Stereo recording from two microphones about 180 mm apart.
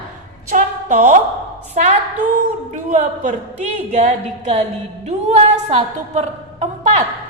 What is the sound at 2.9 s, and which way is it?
A woman's voice, 45° right (ahead or behind).